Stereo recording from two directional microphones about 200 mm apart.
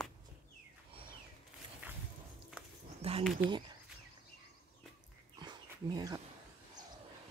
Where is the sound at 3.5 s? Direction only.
25° right (ahead or behind).